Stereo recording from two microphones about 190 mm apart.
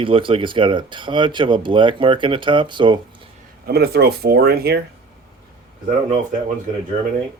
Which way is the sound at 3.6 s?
55° right (ahead or behind).